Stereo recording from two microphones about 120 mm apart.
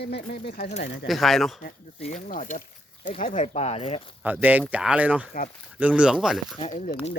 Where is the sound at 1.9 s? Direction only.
75° left (ahead or behind).